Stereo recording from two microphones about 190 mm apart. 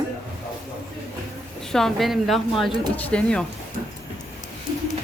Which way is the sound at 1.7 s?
Centre (ahead or behind).